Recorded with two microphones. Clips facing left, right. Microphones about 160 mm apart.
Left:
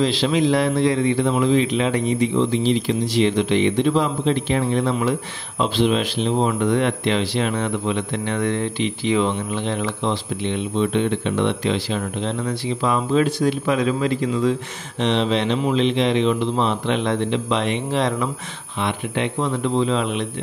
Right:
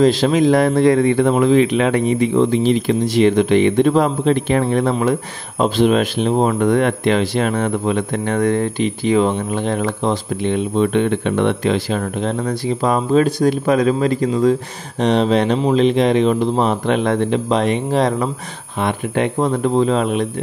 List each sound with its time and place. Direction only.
0.0 s speech: 45° right (ahead or behind)